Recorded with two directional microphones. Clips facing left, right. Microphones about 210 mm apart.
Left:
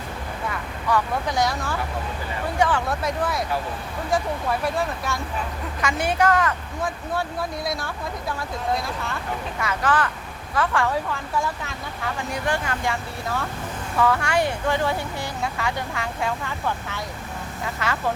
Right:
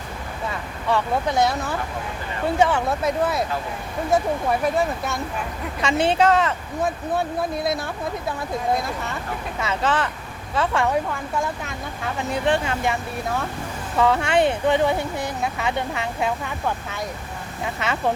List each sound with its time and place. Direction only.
0.9 s speech: 25° right (ahead or behind)
5.8 s speech: 25° right (ahead or behind)
7.6 s speech: 20° right (ahead or behind)
9.6 s speech: 25° right (ahead or behind)
12.3 s speech: 20° right (ahead or behind)
17.8 s speech: 25° right (ahead or behind)